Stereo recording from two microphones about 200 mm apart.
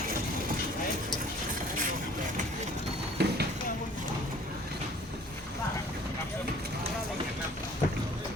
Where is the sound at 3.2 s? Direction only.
55° right (ahead or behind).